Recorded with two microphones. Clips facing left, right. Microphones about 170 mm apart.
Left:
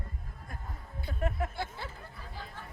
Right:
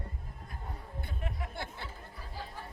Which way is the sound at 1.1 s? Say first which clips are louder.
Left 11 dB; 50° left (ahead or behind).